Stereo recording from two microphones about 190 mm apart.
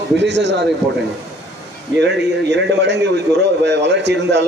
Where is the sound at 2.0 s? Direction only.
65° right (ahead or behind).